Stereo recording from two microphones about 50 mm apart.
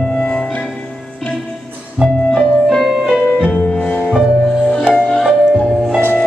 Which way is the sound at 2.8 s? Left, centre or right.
Centre.